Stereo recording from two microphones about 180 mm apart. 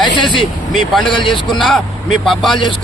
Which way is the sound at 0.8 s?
Centre (ahead or behind).